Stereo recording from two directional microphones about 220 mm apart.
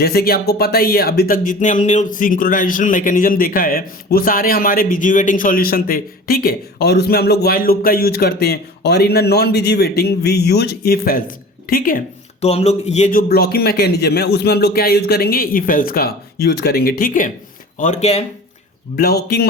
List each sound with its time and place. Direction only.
0.0 s speech: 45° left (ahead or behind)
18.9 s speech: 45° left (ahead or behind)